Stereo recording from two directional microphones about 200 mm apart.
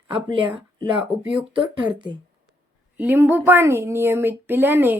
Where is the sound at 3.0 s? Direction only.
10° right (ahead or behind).